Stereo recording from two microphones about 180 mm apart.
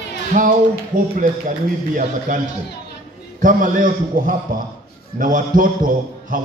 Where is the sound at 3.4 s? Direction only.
50° right (ahead or behind).